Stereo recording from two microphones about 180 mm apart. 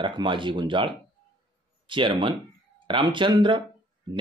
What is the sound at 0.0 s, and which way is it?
Speech, 25° right (ahead or behind).